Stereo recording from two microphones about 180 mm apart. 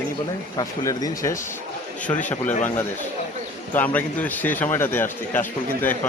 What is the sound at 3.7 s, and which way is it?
A man's voice, 10° left (ahead or behind).